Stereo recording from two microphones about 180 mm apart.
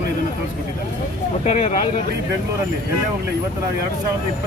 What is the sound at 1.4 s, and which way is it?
Speech, 35° left (ahead or behind).